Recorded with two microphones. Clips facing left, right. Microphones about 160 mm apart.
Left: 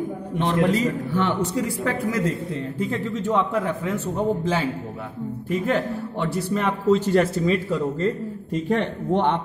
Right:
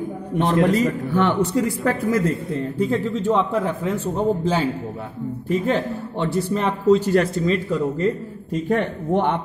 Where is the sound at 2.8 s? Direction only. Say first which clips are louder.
Right 5 dB; 35° right (ahead or behind).